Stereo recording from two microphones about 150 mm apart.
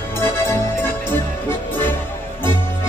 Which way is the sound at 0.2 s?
15° left (ahead or behind).